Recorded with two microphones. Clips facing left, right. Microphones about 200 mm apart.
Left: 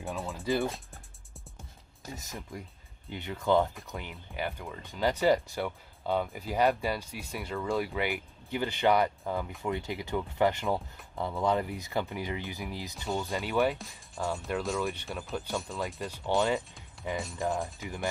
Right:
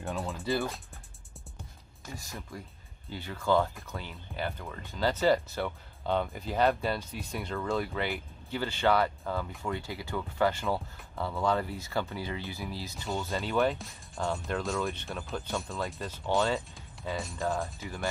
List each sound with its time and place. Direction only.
0.0 s music: centre (ahead or behind)
0.4 s speech: 15° left (ahead or behind)
2.1 s speech: 20° left (ahead or behind)
13.7 s speech: centre (ahead or behind)
16.0 s speech: 15° left (ahead or behind)